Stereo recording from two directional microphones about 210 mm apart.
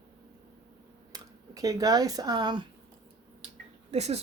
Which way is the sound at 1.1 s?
15° right (ahead or behind).